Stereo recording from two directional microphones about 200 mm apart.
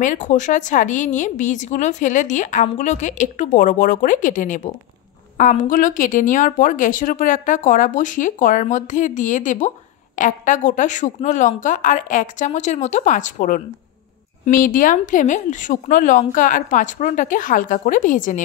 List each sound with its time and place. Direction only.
0.0 s a woman's voice: 40° left (ahead or behind)